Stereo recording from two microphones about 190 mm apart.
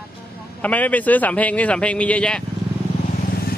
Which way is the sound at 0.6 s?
10° left (ahead or behind).